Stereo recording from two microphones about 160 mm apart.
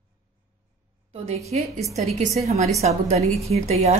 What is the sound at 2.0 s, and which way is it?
A woman's voice, 40° right (ahead or behind).